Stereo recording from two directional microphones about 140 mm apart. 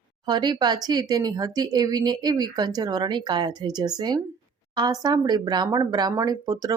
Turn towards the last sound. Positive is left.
turn(degrees=-25)  # may be behind; listen again after turning